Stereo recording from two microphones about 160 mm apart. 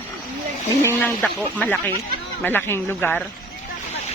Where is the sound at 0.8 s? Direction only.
10° left (ahead or behind).